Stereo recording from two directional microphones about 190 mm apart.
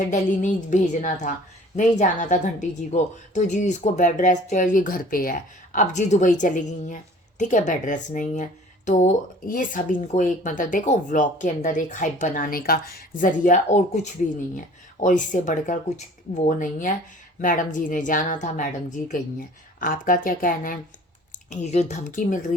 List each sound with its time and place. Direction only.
0.1 s a woman's voice: 40° left (ahead or behind)
21.5 s a woman's voice: 35° left (ahead or behind)